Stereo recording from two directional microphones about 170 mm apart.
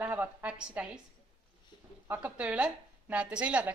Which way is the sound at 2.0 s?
10° right (ahead or behind).